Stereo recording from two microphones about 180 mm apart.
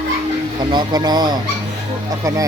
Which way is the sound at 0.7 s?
25° right (ahead or behind).